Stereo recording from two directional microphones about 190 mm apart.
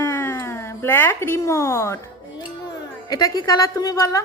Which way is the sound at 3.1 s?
20° left (ahead or behind).